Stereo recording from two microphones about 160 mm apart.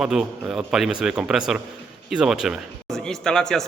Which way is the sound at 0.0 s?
5° right (ahead or behind).